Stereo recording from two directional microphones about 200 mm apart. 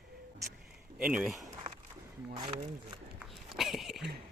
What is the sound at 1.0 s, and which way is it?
Speech, 5° right (ahead or behind).